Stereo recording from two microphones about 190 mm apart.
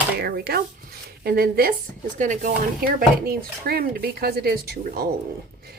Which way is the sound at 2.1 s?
40° right (ahead or behind).